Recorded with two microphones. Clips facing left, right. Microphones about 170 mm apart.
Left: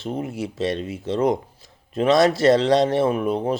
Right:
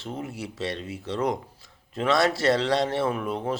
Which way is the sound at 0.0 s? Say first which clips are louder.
Left 7 dB; 20° left (ahead or behind).